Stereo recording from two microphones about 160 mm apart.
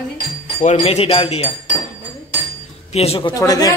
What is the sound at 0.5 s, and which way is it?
Speech, 40° left (ahead or behind).